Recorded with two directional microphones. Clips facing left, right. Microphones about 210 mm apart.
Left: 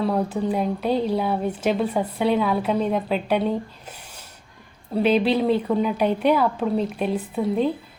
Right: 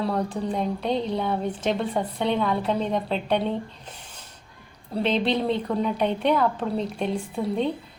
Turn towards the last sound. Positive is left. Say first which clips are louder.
# left 3 dB
turn(degrees=5)  # may be behind; listen again after turning